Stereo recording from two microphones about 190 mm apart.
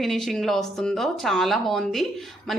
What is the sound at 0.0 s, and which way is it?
Speech, centre (ahead or behind).